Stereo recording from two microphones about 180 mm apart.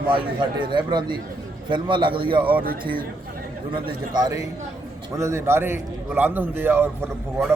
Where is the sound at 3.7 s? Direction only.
25° right (ahead or behind).